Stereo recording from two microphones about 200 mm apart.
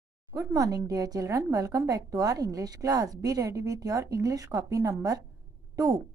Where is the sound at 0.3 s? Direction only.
15° right (ahead or behind).